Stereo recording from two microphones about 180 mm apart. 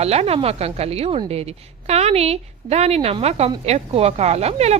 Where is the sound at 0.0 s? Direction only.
35° right (ahead or behind).